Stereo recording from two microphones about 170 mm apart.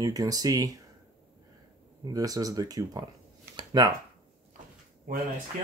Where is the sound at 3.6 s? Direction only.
20° right (ahead or behind).